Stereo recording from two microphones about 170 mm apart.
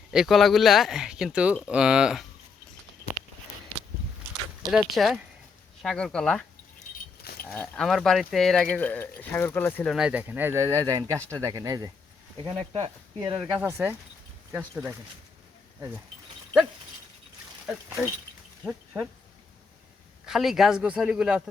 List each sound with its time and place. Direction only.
0.1 s speech: centre (ahead or behind)
4.7 s speech: centre (ahead or behind)
7.2 s keys jangling: 65° left (ahead or behind)
7.4 s speech: 10° left (ahead or behind)
9.9 s speech: 5° right (ahead or behind)
12.4 s speech: 35° right (ahead or behind)
13.1 s speech: 20° right (ahead or behind)
17.7 s speech: 5° right (ahead or behind)
20.2 s speech: centre (ahead or behind)